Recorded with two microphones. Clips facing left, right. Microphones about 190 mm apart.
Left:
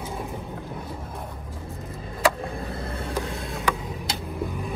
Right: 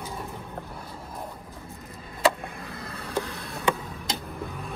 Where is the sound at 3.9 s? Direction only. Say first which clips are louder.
Left 3 dB; 15° left (ahead or behind).